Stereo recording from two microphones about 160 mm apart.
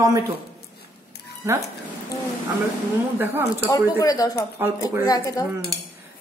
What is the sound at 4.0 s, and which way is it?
Speech, 20° left (ahead or behind).